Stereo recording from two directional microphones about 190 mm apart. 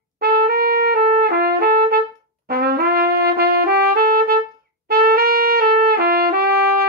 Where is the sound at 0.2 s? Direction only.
55° right (ahead or behind).